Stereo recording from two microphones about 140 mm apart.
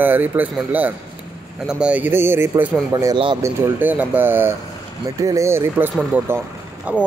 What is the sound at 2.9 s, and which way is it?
Speech, 30° right (ahead or behind).